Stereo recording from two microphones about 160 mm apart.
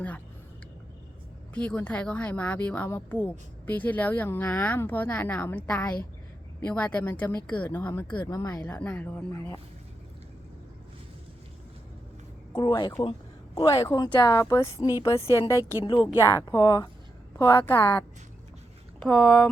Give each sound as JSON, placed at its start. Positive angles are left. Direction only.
{"t": 1.5, "sound": "a woman's voice", "side_deg": 10}
{"t": 8.6, "sound": "a woman's voice", "side_deg": 10}
{"t": 12.5, "sound": "a woman's voice", "side_deg": 25}
{"t": 15.8, "sound": "speech", "side_deg": 30}
{"t": 16.2, "sound": "a woman's voice", "side_deg": 20}